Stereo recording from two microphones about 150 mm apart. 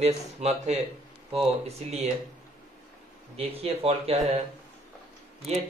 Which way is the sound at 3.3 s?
40° right (ahead or behind).